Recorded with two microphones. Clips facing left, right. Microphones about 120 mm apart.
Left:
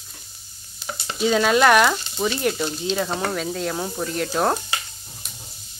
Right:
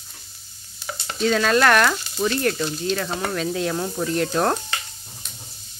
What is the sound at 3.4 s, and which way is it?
Sizzle, centre (ahead or behind).